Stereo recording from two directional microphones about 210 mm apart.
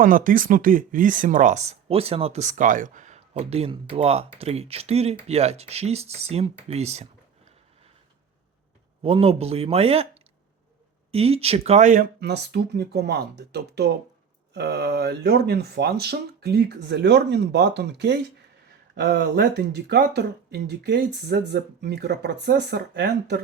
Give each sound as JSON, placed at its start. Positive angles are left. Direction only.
{"t": 0.0, "sound": "speech", "side_deg": -40}
{"t": 9.0, "sound": "speech", "side_deg": -25}
{"t": 11.1, "sound": "speech", "side_deg": -30}